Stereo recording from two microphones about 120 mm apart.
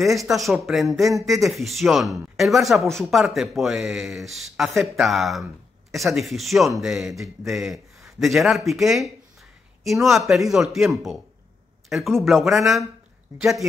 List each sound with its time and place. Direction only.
0.0 s speech: centre (ahead or behind)
12.2 s speech: centre (ahead or behind)